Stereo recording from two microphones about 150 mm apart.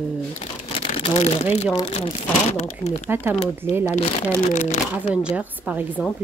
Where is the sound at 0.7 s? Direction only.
40° left (ahead or behind).